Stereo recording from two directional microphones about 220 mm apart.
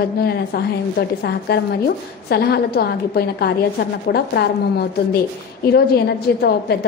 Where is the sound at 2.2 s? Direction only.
45° left (ahead or behind).